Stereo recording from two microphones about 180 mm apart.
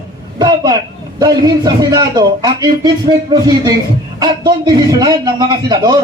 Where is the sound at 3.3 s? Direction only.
20° right (ahead or behind).